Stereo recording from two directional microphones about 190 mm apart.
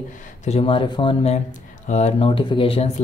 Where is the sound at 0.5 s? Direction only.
30° left (ahead or behind).